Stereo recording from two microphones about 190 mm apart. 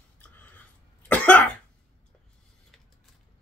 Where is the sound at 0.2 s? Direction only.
10° left (ahead or behind).